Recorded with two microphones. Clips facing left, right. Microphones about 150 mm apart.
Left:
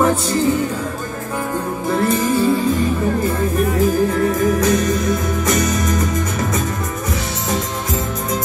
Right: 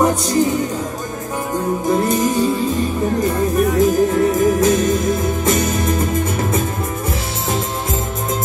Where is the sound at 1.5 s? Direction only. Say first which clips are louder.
Right 4 dB; 20° right (ahead or behind).